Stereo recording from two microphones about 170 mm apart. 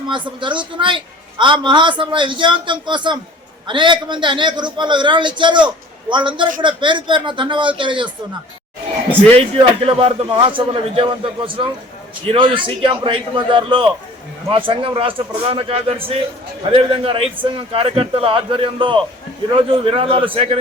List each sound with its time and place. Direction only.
0.1 s a woman's voice: 30° right (ahead or behind)
9.3 s a man's voice: 35° right (ahead or behind)